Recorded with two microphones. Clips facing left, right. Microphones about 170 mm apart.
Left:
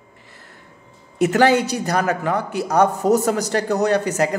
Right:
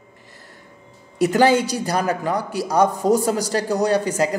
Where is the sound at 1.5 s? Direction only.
30° right (ahead or behind).